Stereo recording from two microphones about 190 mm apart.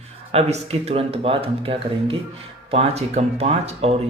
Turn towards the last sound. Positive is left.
turn(degrees=-30)  # may be behind; listen again after turning